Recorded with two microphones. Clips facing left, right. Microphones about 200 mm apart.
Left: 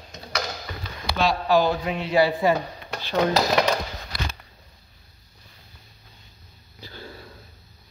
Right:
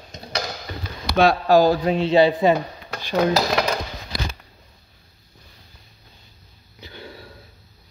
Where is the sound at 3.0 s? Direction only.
15° right (ahead or behind).